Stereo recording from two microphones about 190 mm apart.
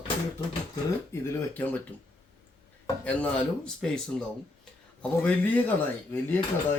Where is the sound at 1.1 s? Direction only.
10° left (ahead or behind).